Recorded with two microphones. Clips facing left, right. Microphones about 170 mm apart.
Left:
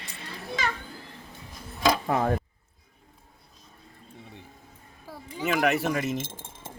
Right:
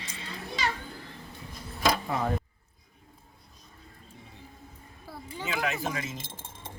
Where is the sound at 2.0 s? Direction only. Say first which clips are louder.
Left 5 dB; 55° left (ahead or behind).